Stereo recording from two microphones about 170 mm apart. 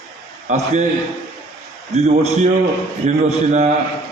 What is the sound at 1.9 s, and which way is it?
A man's voice, 40° right (ahead or behind).